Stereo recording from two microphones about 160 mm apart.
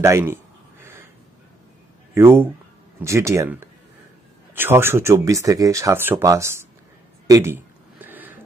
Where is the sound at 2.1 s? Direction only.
15° right (ahead or behind).